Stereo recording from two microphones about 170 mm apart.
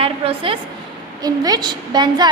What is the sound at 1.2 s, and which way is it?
A woman's voice, 20° right (ahead or behind).